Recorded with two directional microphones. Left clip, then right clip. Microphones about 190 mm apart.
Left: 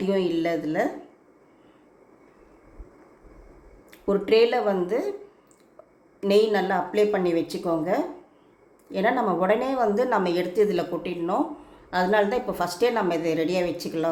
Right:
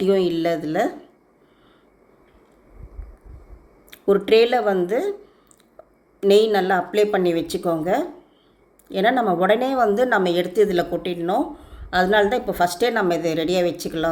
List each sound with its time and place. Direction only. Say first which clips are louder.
0.0 s a woman's voice: right 5 dB; 25° right (ahead or behind)
3.9 s a woman's voice: right 5 dB; 25° right (ahead or behind)
6.1 s a woman's voice: right 5 dB; 25° right (ahead or behind)
11.9 s a woman's voice: right 4 dB; 25° right (ahead or behind)